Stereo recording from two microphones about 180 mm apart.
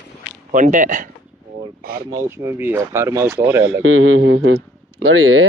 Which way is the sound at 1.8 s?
55° right (ahead or behind).